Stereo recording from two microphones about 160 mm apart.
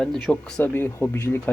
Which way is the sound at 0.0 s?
5° left (ahead or behind).